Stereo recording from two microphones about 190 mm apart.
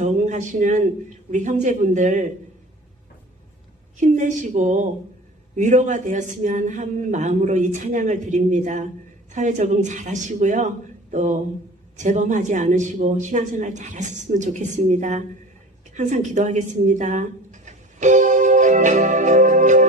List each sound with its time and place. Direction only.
0.0 s a sound: 40° right (ahead or behind)
1.3 s speech: 40° right (ahead or behind)
4.0 s speech: 40° right (ahead or behind)